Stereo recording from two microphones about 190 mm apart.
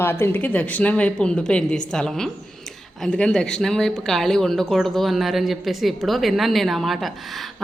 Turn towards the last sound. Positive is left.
turn(degrees=0)  # may be behind; listen again after turning